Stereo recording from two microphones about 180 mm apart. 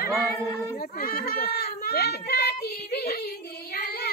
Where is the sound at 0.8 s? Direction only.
55° left (ahead or behind).